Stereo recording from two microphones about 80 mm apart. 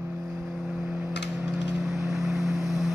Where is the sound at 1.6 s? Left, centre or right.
Centre.